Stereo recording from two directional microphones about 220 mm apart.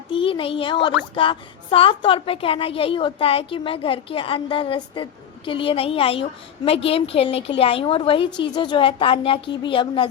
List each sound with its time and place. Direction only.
0.1 s a child's voice: 25° left (ahead or behind)